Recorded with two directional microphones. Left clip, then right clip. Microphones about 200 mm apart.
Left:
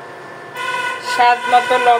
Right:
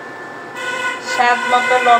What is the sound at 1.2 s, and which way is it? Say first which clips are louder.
Emergency vehicle: left 2 dB; 20° left (ahead or behind).